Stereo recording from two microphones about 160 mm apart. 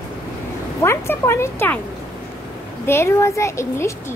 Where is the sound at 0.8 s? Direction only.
15° left (ahead or behind).